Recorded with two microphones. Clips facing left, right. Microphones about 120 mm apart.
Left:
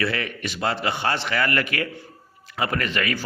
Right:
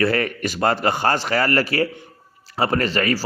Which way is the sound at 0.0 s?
45° right (ahead or behind).